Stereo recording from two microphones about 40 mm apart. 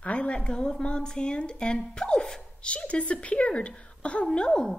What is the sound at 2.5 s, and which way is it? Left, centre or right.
Speech, left.